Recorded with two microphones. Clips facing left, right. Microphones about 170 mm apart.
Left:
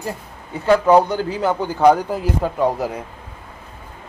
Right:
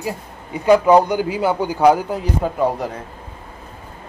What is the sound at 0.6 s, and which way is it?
A man's voice, 15° right (ahead or behind).